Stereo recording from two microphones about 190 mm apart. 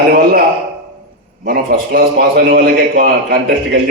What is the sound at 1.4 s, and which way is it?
A man's voice, 60° right (ahead or behind).